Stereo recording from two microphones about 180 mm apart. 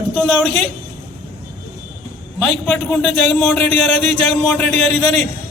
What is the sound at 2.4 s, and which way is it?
Speech, centre (ahead or behind).